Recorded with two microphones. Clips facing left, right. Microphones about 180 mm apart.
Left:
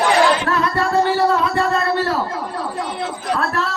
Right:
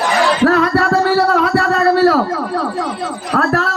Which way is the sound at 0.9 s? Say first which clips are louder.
Right 3 dB; 85° right.